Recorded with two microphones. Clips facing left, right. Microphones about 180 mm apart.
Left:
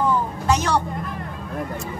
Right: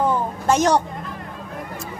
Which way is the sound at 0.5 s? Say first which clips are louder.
Right 5 dB; 45° right (ahead or behind).